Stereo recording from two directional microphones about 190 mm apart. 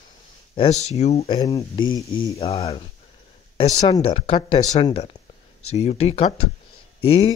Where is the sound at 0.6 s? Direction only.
35° left (ahead or behind).